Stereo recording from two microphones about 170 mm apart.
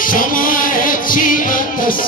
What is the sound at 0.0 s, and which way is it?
Music, 55° left (ahead or behind).